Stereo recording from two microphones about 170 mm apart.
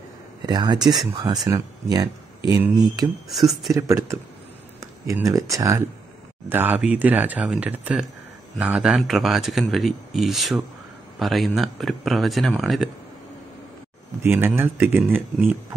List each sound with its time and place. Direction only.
0.5 s speech: 25° right (ahead or behind)
3.3 s speech: centre (ahead or behind)
3.7 s speech: 15° right (ahead or behind); by 12.9 s centre (ahead or behind)
14.2 s speech: 15° right (ahead or behind)